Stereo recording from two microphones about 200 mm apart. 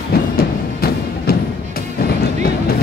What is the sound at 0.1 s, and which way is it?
Music, 50° left (ahead or behind).